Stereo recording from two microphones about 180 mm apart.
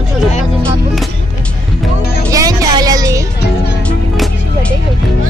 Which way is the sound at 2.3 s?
20° right (ahead or behind).